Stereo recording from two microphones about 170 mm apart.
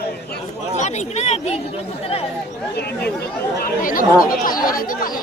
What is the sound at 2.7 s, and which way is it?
Speech, 70° left (ahead or behind).